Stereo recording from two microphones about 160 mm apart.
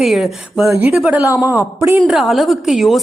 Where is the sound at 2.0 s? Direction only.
Centre (ahead or behind).